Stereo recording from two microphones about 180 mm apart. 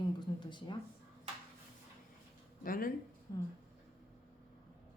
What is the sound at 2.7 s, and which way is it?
Speech, 50° left (ahead or behind).